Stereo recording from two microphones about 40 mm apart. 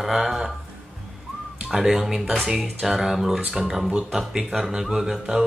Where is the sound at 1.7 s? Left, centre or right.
Centre.